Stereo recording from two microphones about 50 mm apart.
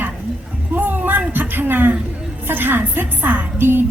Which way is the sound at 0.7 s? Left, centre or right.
Right.